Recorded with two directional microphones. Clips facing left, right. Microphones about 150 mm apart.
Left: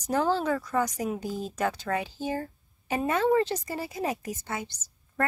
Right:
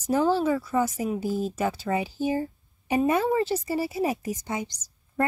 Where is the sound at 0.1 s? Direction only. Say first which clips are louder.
Right 3 dB; 10° right (ahead or behind).